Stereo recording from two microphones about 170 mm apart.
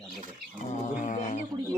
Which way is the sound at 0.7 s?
45° left (ahead or behind).